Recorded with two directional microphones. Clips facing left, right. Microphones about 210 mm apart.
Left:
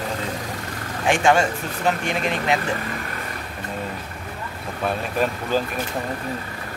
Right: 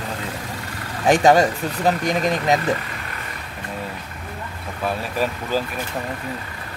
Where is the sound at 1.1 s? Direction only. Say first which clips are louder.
Right 4 dB; 40° right (ahead or behind).